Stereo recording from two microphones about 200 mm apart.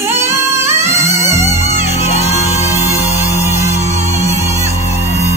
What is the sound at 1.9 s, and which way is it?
Music, 35° left (ahead or behind).